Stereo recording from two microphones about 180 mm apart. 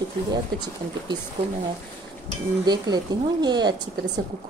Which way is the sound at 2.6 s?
20° right (ahead or behind).